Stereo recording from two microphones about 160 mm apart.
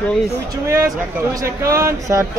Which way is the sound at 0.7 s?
15° right (ahead or behind).